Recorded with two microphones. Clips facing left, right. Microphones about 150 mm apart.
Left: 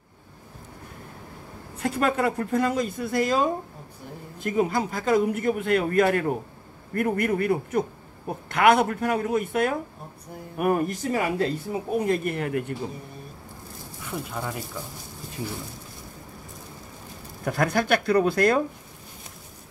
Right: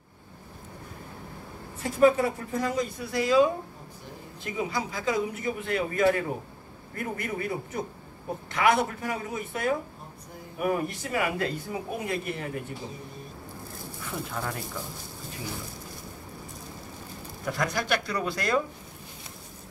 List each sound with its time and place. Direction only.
1.8 s a man's voice: 65° left (ahead or behind)
11.1 s speech: 35° left (ahead or behind)
12.1 s a man's voice: 60° left (ahead or behind)
14.3 s speech: 10° left (ahead or behind)
17.5 s speech: 55° left (ahead or behind)